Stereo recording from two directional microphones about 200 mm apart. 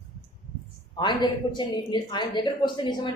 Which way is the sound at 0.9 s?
20° left (ahead or behind).